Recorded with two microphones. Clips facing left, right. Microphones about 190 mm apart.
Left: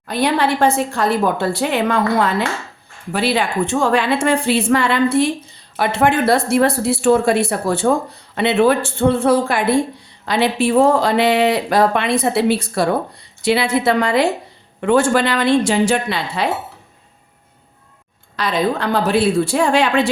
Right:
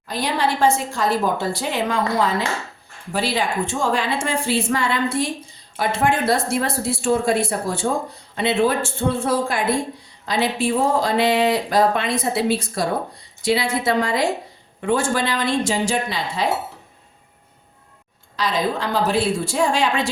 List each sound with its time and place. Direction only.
0.0 s a woman's voice: 65° left (ahead or behind)
18.3 s a woman's voice: 60° left (ahead or behind)